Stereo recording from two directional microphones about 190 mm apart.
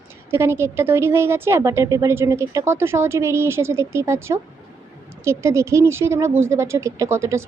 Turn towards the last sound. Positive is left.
turn(degrees=-15)  # may be behind; listen again after turning